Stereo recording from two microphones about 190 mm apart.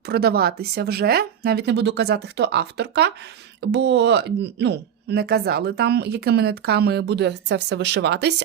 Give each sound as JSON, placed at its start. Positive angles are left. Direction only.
{"t": 0.1, "sound": "speech", "side_deg": -55}